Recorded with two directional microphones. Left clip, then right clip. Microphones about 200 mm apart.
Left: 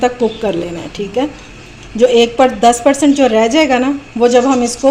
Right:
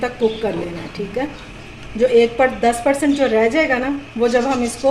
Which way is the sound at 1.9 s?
40° left (ahead or behind).